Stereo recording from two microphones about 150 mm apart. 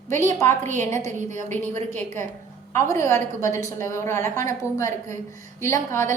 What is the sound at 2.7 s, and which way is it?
A woman's voice, 20° left (ahead or behind).